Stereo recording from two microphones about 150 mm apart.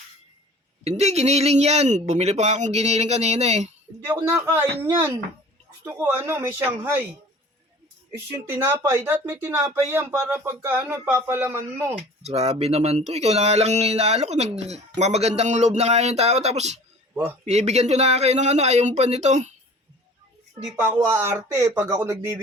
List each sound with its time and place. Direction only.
0.9 s speech: 45° right (ahead or behind)
4.0 s speech: 15° right (ahead or behind)
8.4 s speech: 15° right (ahead or behind)
12.2 s speech: 45° right (ahead or behind)
20.7 s speech: 15° right (ahead or behind)